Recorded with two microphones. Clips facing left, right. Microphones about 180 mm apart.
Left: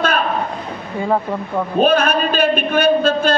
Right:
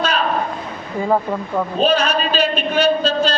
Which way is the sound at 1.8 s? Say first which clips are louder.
Left 3 dB; 55° left (ahead or behind).